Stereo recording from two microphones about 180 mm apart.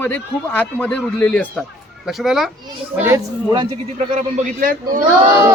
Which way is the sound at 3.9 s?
45° right (ahead or behind).